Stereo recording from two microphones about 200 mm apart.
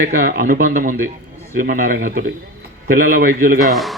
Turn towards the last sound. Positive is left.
turn(degrees=0)  # may be behind; listen again after turning